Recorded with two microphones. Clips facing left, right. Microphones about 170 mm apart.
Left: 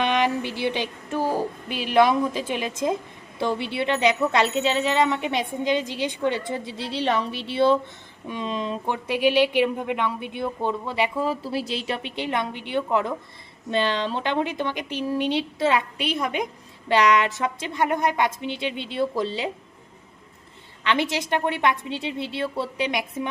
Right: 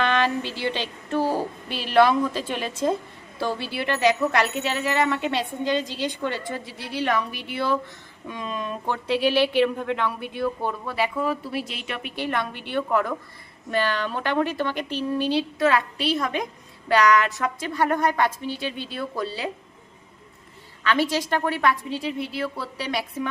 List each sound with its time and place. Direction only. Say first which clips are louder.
0.0 s a woman's voice: left 1 dB; 15° left (ahead or behind)
20.8 s speech: right 1 dB; 20° left (ahead or behind)